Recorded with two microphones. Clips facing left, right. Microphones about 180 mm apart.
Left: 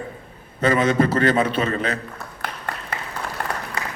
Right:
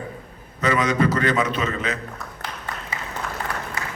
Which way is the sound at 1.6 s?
35° left (ahead or behind).